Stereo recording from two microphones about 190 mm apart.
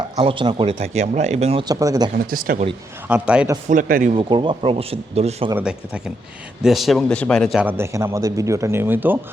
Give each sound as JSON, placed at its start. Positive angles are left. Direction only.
{"t": 0.2, "sound": "speech", "side_deg": -30}
{"t": 1.6, "sound": "speech", "side_deg": -20}
{"t": 2.1, "sound": "speech", "side_deg": -50}
{"t": 3.1, "sound": "a man's voice", "side_deg": -5}
{"t": 3.7, "sound": "speech", "side_deg": -45}
{"t": 4.1, "sound": "speech", "side_deg": -25}
{"t": 6.6, "sound": "a man's voice", "side_deg": 0}